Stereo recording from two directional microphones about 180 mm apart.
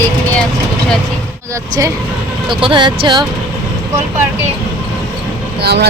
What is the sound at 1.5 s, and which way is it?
Speech, 20° right (ahead or behind).